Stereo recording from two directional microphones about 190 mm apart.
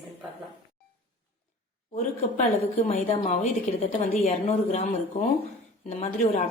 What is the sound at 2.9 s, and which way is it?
A woman's voice, 40° left (ahead or behind).